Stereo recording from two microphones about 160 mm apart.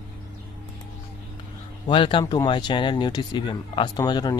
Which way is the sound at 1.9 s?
30° left (ahead or behind).